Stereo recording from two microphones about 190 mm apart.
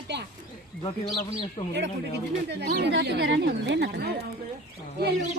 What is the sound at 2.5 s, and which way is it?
Speech, 60° right (ahead or behind).